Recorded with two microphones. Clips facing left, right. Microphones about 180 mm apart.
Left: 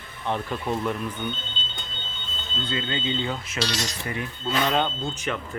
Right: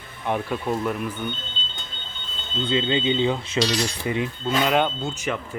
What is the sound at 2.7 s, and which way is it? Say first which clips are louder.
Speech: right 7 dB; 20° right (ahead or behind).